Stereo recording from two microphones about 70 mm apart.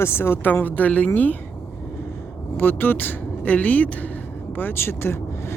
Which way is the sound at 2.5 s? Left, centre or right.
Left.